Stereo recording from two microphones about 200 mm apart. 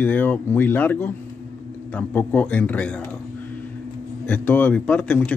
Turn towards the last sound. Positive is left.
turn(degrees=5)  # may be behind; listen again after turning